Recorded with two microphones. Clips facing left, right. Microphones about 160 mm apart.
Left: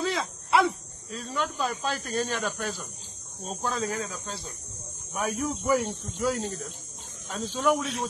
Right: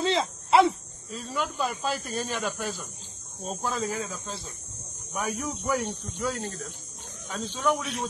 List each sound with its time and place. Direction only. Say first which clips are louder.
0.0 s a sound: right 3 dB; 25° right (ahead or behind)
1.1 s speech: even; 10° right (ahead or behind)
5.1 s speech: left 2 dB; centre (ahead or behind)
6.3 s speech: left 3 dB; 10° left (ahead or behind)
7.2 s speech: left 2 dB; centre (ahead or behind)